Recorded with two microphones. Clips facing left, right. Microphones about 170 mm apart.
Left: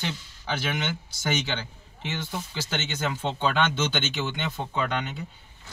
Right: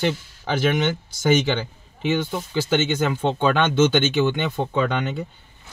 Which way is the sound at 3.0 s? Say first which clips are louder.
Right 6 dB; 55° right (ahead or behind).